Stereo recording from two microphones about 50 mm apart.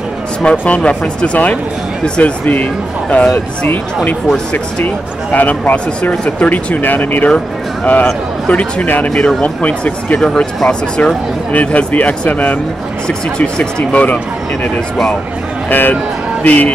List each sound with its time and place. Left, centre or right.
0.4 s speech: left
3.6 s speech: left
7.2 s a man's voice: left
9.1 s speech: centre
9.4 s speech: left
10.2 s speech: centre
11.5 s speech: left
13.9 s speech: left
15.7 s speech: left
16.4 s speech: left